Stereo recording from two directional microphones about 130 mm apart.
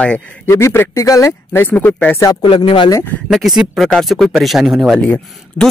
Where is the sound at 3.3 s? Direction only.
5° right (ahead or behind).